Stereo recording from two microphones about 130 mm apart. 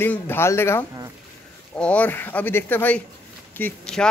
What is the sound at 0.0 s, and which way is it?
Speech, 15° left (ahead or behind).